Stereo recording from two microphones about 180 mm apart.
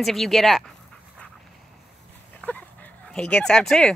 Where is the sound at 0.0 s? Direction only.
Centre (ahead or behind).